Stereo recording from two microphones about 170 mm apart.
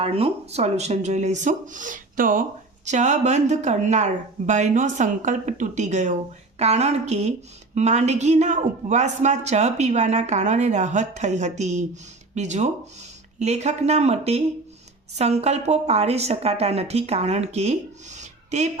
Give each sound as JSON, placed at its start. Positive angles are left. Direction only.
{"t": 0.0, "sound": "a woman's voice", "side_deg": -35}